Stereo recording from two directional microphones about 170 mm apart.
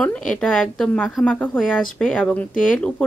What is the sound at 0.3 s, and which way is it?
A woman's voice, 5° left (ahead or behind).